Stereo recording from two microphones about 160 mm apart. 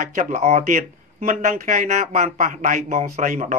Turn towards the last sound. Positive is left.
turn(degrees=-55)  # may be behind; listen again after turning